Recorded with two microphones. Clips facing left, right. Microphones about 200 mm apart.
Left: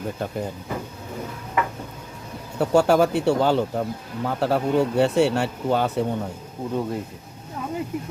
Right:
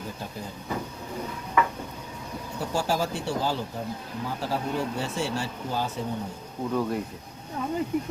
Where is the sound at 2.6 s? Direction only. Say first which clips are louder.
Left 10 dB; 65° left (ahead or behind).